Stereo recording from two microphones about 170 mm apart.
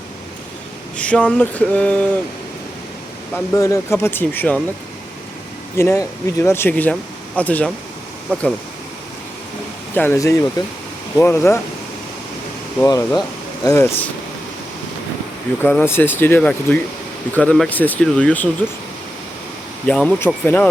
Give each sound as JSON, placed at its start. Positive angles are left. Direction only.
{"t": 1.0, "sound": "speech", "side_deg": 10}
{"t": 3.3, "sound": "speech", "side_deg": 20}
{"t": 5.7, "sound": "speech", "side_deg": 15}
{"t": 9.9, "sound": "speech", "side_deg": 10}
{"t": 12.8, "sound": "speech", "side_deg": 20}
{"t": 15.6, "sound": "speech", "side_deg": 10}
{"t": 19.9, "sound": "speech", "side_deg": 5}